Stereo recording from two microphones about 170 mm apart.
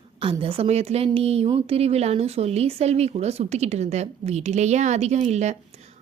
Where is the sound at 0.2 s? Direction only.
30° right (ahead or behind).